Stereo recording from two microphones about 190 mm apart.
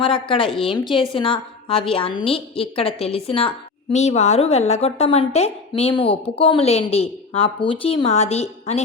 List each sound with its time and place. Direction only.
0.0 s a woman's voice: 25° left (ahead or behind)